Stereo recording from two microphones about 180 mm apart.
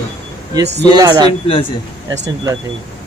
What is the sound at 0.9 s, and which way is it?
Speech, 25° right (ahead or behind).